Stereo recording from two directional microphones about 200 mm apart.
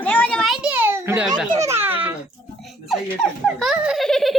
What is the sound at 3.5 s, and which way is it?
Giggle, centre (ahead or behind).